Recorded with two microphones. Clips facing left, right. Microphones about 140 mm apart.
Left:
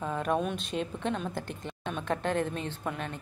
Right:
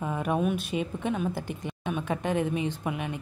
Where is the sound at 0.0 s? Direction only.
10° right (ahead or behind).